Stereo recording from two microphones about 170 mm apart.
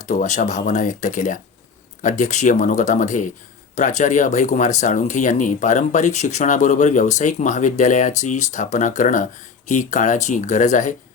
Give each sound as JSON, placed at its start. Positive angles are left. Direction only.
{"t": 0.0, "sound": "speech", "side_deg": 45}